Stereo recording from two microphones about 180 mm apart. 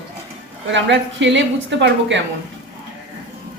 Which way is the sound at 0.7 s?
80° right.